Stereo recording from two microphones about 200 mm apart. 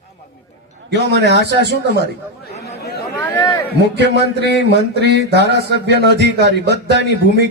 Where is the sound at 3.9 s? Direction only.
55° right (ahead or behind).